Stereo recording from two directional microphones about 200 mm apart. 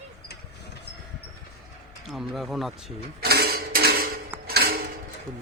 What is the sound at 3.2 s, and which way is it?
Dishes, 50° right (ahead or behind).